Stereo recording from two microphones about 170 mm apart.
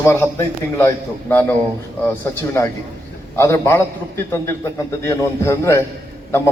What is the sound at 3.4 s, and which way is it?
A man's voice, 15° left (ahead or behind).